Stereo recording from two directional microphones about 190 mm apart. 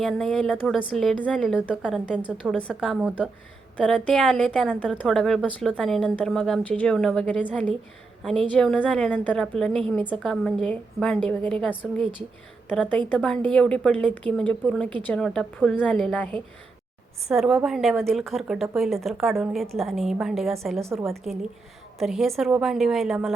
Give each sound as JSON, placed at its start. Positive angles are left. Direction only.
{"t": 0.0, "sound": "a woman's voice", "side_deg": 0}